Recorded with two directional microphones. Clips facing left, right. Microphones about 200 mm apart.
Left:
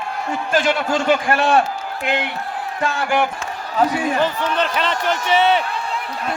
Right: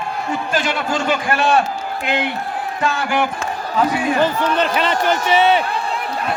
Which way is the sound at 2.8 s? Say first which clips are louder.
Even; 50° left (ahead or behind).